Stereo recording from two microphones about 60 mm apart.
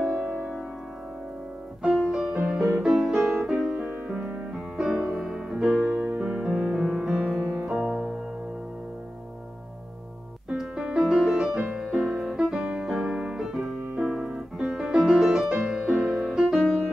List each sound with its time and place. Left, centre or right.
0.1 s music: centre
1.8 s music: centre
4.7 s music: centre
5.9 s music: right
10.6 s music: centre
13.0 s piano: centre
15.6 s music: centre